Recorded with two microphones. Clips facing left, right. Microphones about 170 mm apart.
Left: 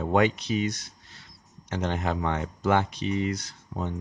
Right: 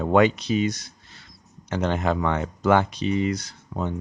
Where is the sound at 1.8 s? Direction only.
90° right.